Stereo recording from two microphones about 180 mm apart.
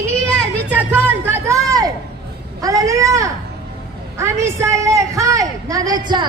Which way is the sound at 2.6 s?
20° right (ahead or behind).